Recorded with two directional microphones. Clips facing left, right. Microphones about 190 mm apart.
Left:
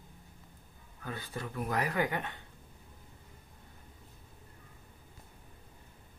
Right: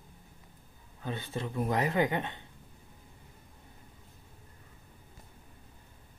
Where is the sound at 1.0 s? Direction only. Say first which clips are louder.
Right 4 dB; 25° right (ahead or behind).